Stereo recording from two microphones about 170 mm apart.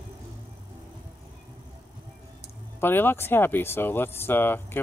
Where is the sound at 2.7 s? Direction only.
10° left (ahead or behind).